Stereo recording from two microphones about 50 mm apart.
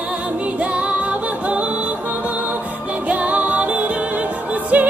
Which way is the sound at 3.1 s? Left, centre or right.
Right.